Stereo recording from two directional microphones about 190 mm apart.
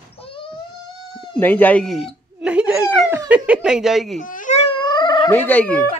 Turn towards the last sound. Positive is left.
turn(degrees=10)  # may be behind; listen again after turning